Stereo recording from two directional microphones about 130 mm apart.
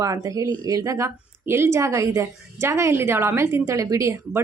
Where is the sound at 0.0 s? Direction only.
25° right (ahead or behind).